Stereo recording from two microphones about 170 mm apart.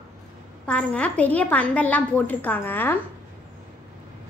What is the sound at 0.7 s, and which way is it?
A woman's voice, 5° left (ahead or behind).